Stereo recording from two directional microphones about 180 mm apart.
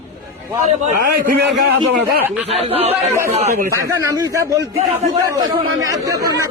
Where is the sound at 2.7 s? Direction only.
35° right (ahead or behind).